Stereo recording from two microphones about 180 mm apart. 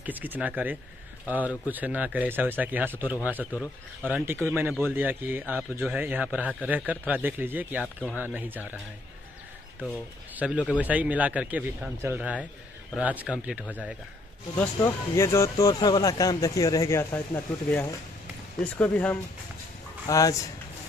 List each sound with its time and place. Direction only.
0.0 s a man's voice: 10° right (ahead or behind)
10.3 s a man's voice: 5° right (ahead or behind)
14.6 s speech: 15° left (ahead or behind)
20.1 s speech: 20° left (ahead or behind)